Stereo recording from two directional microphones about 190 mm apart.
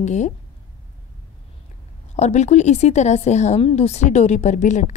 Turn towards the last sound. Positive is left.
turn(degrees=40)  # may be behind; listen again after turning